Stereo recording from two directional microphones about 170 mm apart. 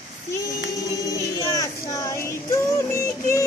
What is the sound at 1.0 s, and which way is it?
Child singing, 20° left (ahead or behind).